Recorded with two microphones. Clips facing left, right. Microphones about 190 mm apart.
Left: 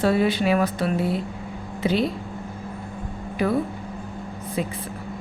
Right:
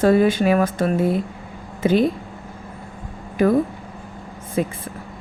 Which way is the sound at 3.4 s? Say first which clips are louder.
Right 6 dB; 45° right (ahead or behind).